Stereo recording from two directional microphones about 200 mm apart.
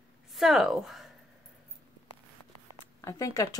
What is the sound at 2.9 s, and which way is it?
Speech, 15° left (ahead or behind).